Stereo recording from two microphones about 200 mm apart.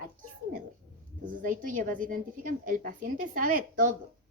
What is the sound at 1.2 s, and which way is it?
A woman's voice, 40° right (ahead or behind).